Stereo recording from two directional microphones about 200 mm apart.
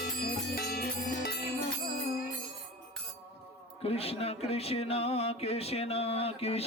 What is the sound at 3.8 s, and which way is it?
Speech, 30° left (ahead or behind).